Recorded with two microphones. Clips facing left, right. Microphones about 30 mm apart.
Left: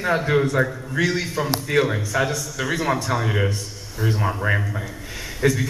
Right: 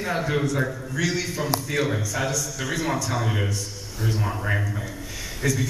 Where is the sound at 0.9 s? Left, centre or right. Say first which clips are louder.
Left 5 dB; left.